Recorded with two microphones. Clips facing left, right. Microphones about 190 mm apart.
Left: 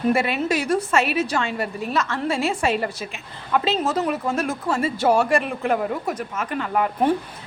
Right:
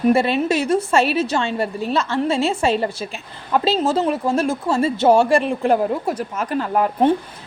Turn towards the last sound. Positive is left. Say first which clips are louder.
# right 4 dB
turn(degrees=-35)  # may be behind; listen again after turning